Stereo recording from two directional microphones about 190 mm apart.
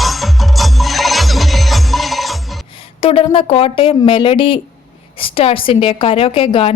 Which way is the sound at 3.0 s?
30° left (ahead or behind).